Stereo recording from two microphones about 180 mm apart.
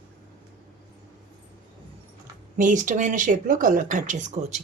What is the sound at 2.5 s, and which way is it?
Speech, 45° right (ahead or behind).